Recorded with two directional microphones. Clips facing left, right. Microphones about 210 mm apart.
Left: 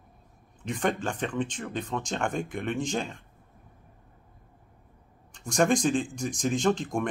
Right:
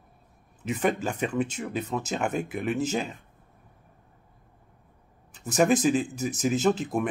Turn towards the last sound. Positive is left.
turn(degrees=-5)  # may be behind; listen again after turning